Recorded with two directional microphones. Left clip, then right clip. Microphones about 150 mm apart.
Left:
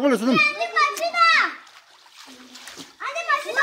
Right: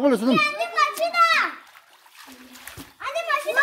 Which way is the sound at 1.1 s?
60° right (ahead or behind).